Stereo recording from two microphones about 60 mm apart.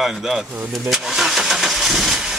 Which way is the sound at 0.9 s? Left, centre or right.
Centre.